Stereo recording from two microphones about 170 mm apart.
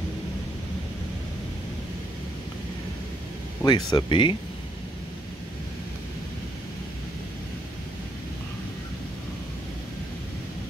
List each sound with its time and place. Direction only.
3.6 s speech: 25° left (ahead or behind)